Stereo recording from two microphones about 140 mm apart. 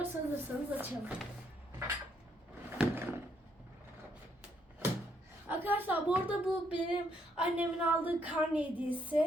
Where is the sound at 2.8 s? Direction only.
15° right (ahead or behind).